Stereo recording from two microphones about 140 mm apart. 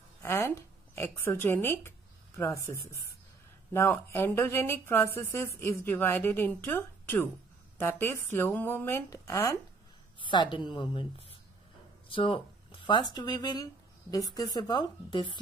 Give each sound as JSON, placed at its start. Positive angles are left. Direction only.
{"t": 0.2, "sound": "a woman's voice", "side_deg": 20}
{"t": 10.2, "sound": "a woman's voice", "side_deg": 35}